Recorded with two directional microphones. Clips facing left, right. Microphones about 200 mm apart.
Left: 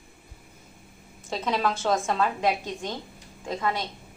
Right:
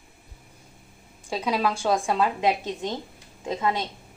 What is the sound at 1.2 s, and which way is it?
A woman's voice, 10° right (ahead or behind).